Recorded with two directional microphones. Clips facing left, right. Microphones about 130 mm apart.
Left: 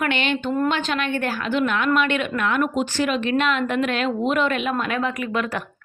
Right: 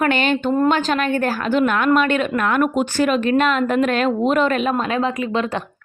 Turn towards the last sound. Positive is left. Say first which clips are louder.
# right 4 dB
turn(degrees=-25)  # may be behind; listen again after turning